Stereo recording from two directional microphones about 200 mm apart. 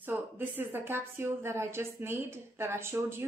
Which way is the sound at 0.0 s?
10° right (ahead or behind).